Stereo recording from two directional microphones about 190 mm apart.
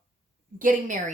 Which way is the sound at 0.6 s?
45° right (ahead or behind).